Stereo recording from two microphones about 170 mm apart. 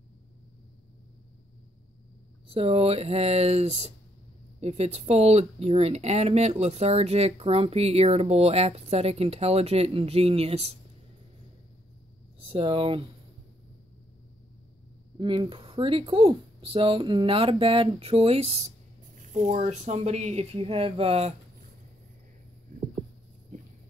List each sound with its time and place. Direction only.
2.4 s speech: 35° right (ahead or behind)
12.4 s speech: 35° right (ahead or behind)
15.1 s speech: 25° right (ahead or behind)